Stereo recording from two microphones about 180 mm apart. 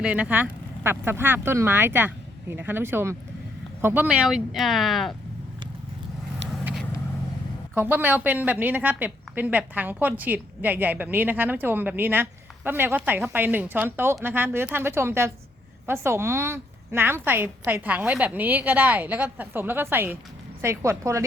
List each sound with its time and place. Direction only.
0.0 s a woman's voice: 10° right (ahead or behind)
7.8 s a woman's voice: 10° right (ahead or behind)